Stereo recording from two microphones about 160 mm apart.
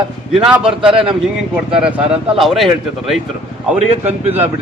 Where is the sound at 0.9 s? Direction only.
35° right (ahead or behind).